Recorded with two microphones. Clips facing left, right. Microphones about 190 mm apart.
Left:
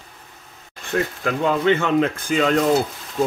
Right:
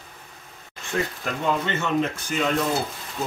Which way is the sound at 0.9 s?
65° left (ahead or behind).